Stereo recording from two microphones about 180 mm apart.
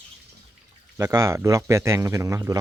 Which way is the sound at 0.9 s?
20° right (ahead or behind).